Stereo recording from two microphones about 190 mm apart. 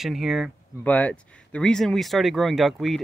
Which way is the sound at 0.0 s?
Centre (ahead or behind).